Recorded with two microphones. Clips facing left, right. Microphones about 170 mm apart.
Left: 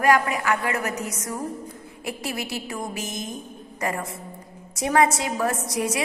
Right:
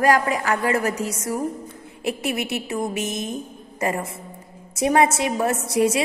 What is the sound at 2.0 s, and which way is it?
A woman's voice, 25° right (ahead or behind).